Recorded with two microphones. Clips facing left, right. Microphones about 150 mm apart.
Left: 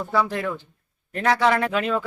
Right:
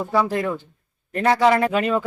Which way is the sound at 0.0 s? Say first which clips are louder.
Right 3 dB; 10° right (ahead or behind).